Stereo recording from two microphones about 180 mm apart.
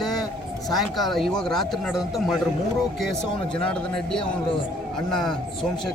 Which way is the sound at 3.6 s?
5° left (ahead or behind).